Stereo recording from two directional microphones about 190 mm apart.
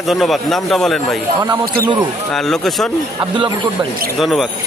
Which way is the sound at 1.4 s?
20° right (ahead or behind).